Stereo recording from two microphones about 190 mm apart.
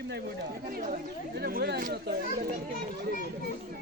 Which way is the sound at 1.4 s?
55° right (ahead or behind).